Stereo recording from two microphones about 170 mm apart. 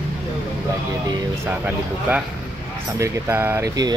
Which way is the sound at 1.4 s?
10° right (ahead or behind).